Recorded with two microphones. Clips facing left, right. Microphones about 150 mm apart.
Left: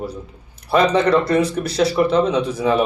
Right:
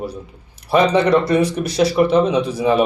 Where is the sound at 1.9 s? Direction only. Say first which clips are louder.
Right 2 dB; 10° right (ahead or behind).